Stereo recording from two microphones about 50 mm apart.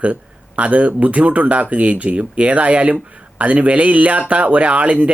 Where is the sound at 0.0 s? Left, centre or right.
Right.